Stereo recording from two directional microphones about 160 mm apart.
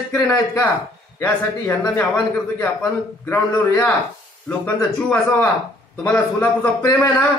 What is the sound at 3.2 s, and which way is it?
Speech, 15° left (ahead or behind).